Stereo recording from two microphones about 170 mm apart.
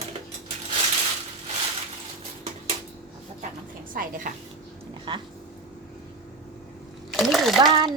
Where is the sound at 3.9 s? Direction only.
55° right (ahead or behind).